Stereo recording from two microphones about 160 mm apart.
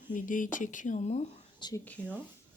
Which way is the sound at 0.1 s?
55° left (ahead or behind).